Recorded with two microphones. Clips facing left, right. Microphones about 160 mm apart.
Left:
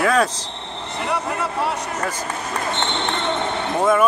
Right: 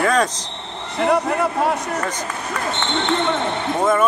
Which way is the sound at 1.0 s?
40° right (ahead or behind).